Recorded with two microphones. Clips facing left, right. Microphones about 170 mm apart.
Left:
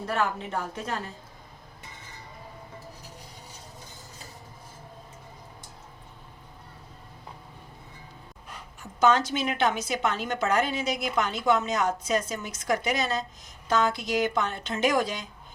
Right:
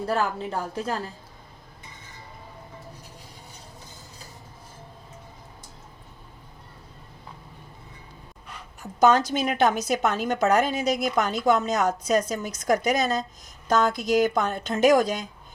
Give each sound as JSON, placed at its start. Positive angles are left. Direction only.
{"t": 0.1, "sound": "a woman's voice", "side_deg": -35}
{"t": 9.0, "sound": "a woman's voice", "side_deg": -40}